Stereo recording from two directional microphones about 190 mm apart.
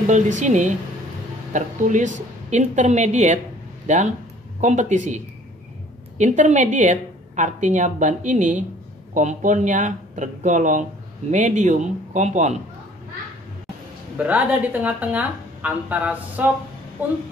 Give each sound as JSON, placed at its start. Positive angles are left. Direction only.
{"t": 0.0, "sound": "speech", "side_deg": -40}
{"t": 14.1, "sound": "a woman's voice", "side_deg": -10}